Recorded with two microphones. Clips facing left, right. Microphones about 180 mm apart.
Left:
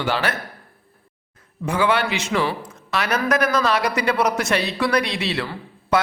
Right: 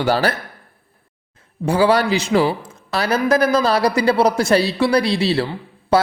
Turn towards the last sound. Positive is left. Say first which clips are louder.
# right 4 dB
turn(degrees=-30)  # may be behind; listen again after turning